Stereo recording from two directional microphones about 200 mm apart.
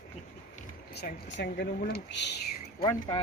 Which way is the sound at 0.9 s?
55° left (ahead or behind).